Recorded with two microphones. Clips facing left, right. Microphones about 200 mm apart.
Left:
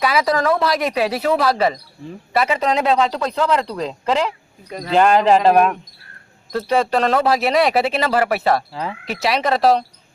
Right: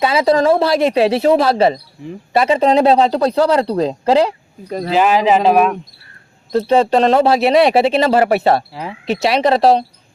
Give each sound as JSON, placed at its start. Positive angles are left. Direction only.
{"t": 0.0, "sound": "a man's voice", "side_deg": -25}
{"t": 4.9, "sound": "speech", "side_deg": -5}
{"t": 6.5, "sound": "speech", "side_deg": -25}